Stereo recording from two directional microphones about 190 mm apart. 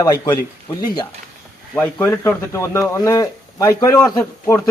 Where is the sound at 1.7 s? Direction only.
10° left (ahead or behind).